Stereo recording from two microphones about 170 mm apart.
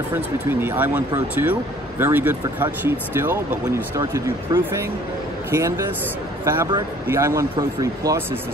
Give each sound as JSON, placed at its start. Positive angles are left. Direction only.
{"t": 0.1, "sound": "speech", "side_deg": -10}